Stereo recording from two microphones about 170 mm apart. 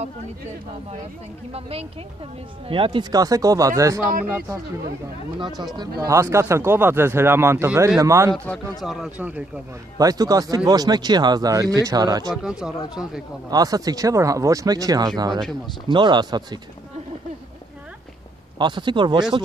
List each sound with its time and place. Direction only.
1.5 s a woman's voice: 35° right (ahead or behind); by 4.0 s 20° right (ahead or behind)
4.0 s speech: 55° right (ahead or behind)
5.8 s speech: 20° right (ahead or behind)
8.5 s speech: centre (ahead or behind)
9.9 s speech: 20° right (ahead or behind)
12.4 s speech: 5° right (ahead or behind)
13.5 s speech: 20° right (ahead or behind)
18.6 s speech: 25° right (ahead or behind)